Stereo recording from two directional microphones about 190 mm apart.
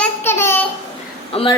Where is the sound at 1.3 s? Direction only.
30° left (ahead or behind).